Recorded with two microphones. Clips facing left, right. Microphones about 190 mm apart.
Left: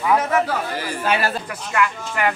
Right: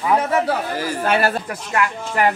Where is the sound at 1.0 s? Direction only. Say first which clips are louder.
Right 3 dB; 50° right (ahead or behind).